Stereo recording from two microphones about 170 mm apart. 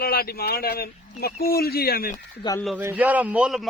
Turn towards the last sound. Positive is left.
turn(degrees=-5)  # may be behind; listen again after turning